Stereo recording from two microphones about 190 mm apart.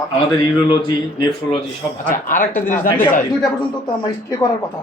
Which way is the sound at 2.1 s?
45° left (ahead or behind).